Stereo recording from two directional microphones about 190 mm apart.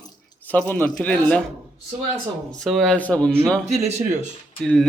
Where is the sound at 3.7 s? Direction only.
35° right (ahead or behind).